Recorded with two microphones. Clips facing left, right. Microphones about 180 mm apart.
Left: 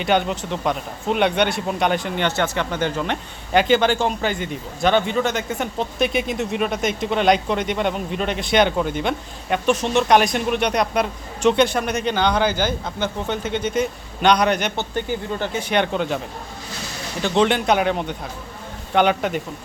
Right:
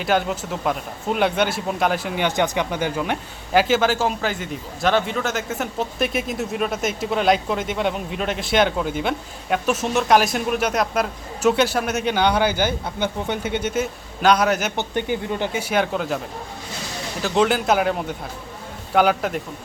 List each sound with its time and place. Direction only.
0.0 s speech: centre (ahead or behind)
14.8 s speech: 15° right (ahead or behind)
15.7 s speech: 5° right (ahead or behind)
17.2 s speech: 5° right (ahead or behind)